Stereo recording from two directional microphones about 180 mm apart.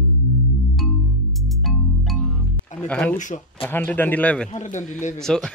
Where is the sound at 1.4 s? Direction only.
Centre (ahead or behind).